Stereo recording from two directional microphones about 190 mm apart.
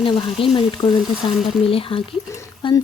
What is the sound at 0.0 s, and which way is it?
Speech, 25° left (ahead or behind).